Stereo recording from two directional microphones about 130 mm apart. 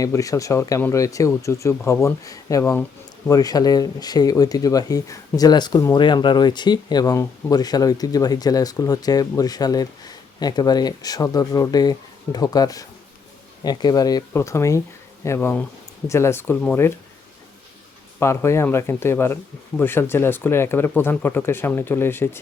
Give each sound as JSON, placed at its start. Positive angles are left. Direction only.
{"t": 0.0, "sound": "speech", "side_deg": 25}
{"t": 18.2, "sound": "speech", "side_deg": 20}